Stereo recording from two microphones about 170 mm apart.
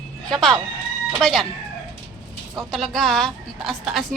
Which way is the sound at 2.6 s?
Centre (ahead or behind).